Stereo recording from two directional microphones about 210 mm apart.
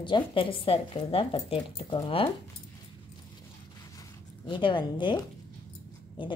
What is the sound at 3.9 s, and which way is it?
Zipper, 20° left (ahead or behind).